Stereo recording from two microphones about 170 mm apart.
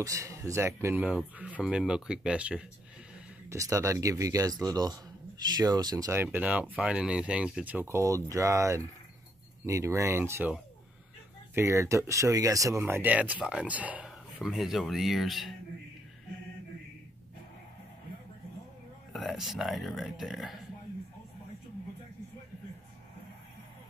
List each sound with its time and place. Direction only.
0.0 s speech: 20° right (ahead or behind)
3.4 s speech: 20° right (ahead or behind)
11.5 s speech: 15° right (ahead or behind); by 15.5 s centre (ahead or behind)
19.1 s speech: centre (ahead or behind)